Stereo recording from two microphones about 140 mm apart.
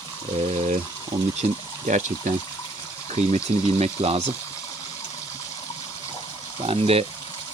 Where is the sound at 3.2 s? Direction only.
45° right (ahead or behind).